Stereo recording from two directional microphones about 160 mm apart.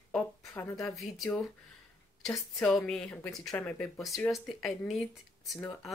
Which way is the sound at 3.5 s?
15° left (ahead or behind).